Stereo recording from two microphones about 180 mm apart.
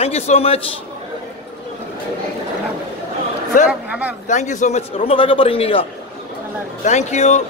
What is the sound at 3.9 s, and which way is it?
Speech, 10° right (ahead or behind).